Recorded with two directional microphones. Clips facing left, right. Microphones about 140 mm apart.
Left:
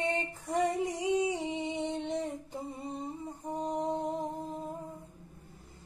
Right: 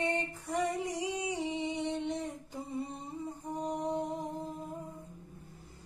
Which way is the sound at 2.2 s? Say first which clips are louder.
Left 3 dB; 25° left (ahead or behind).